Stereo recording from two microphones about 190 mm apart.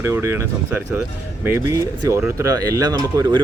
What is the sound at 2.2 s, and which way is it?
Speech, 15° right (ahead or behind).